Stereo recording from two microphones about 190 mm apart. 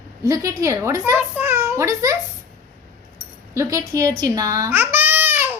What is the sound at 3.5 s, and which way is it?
A child's voice, 15° right (ahead or behind).